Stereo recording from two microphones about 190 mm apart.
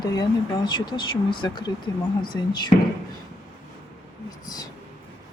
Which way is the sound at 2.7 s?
35° left (ahead or behind).